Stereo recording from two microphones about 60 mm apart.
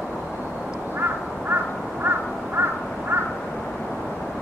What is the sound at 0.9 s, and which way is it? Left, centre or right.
Crow, right.